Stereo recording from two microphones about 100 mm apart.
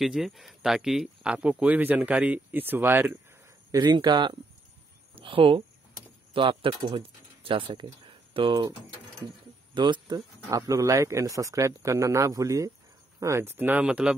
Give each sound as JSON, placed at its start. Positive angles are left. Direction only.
{"t": 0.0, "sound": "speech", "side_deg": 0}
{"t": 3.7, "sound": "speech", "side_deg": -45}
{"t": 5.1, "sound": "speech", "side_deg": -60}
{"t": 9.8, "sound": "speech", "side_deg": -50}